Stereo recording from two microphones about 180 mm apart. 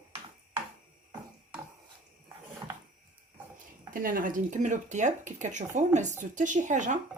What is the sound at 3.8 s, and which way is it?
Speech, 50° right (ahead or behind).